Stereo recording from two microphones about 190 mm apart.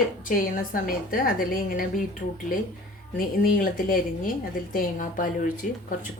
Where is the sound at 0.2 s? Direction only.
45° left (ahead or behind).